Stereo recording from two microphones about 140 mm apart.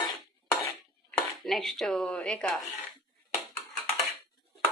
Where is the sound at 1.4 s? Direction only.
Centre (ahead or behind).